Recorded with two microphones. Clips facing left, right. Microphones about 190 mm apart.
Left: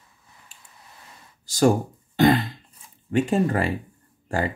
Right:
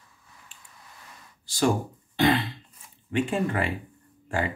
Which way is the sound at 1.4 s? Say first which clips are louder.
Left 5 dB; 45° left (ahead or behind).